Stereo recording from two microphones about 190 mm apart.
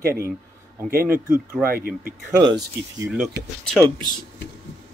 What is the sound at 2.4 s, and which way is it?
Speech, 25° right (ahead or behind).